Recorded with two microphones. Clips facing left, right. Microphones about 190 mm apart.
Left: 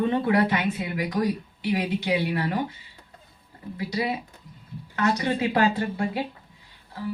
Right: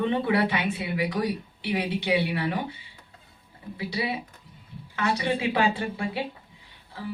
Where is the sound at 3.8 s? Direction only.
45° left (ahead or behind).